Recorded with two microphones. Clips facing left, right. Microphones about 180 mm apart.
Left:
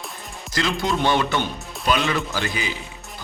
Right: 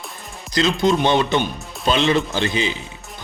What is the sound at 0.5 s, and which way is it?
Speech, 20° right (ahead or behind).